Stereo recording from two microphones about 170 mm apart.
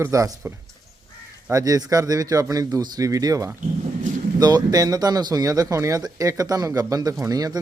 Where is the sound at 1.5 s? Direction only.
20° right (ahead or behind).